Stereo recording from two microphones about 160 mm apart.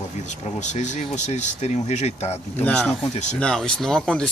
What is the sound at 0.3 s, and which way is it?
Speech, 50° left (ahead or behind).